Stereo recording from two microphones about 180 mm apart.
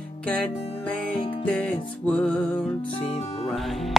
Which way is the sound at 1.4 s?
5° left (ahead or behind).